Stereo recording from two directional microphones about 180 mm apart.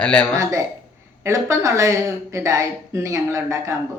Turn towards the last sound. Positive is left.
turn(degrees=-15)  # may be behind; listen again after turning